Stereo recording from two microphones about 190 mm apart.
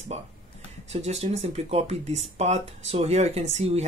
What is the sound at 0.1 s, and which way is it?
Speech, 35° right (ahead or behind).